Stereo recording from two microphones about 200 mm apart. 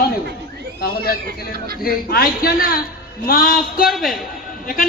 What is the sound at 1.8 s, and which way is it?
A man's voice, 50° left (ahead or behind).